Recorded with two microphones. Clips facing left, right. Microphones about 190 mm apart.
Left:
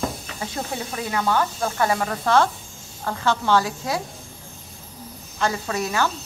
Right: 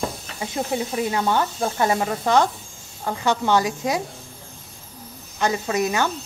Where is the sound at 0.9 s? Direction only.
25° right (ahead or behind).